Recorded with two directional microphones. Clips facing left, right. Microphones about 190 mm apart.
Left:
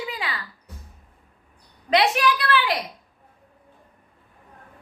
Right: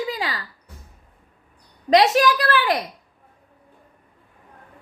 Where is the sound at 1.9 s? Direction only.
40° right (ahead or behind).